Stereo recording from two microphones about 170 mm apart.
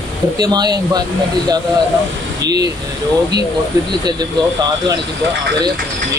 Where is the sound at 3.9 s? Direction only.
25° right (ahead or behind).